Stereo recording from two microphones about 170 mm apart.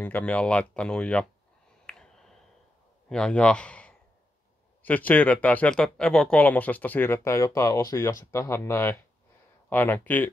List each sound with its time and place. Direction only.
0.0 s speech: 10° left (ahead or behind)
1.9 s a sound: 5° left (ahead or behind)
3.1 s a man's voice: 5° left (ahead or behind)